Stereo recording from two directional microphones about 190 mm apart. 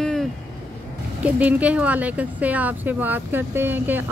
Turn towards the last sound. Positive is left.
turn(degrees=-10)  # may be behind; listen again after turning